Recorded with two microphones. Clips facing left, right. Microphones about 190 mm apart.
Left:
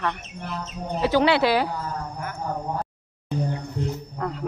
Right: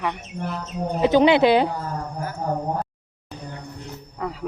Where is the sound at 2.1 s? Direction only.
30° right (ahead or behind).